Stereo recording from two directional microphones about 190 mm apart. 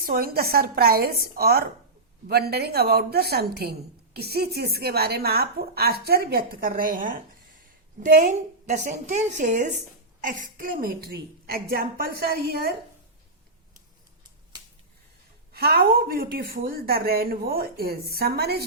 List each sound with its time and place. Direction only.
0.0 s a woman's voice: 50° right (ahead or behind)
15.5 s a woman's voice: 55° right (ahead or behind)